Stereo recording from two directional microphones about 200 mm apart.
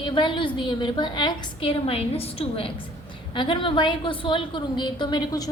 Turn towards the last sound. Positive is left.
turn(degrees=20)  # may be behind; listen again after turning